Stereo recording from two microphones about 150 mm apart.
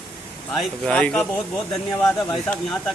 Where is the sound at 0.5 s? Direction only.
5° left (ahead or behind).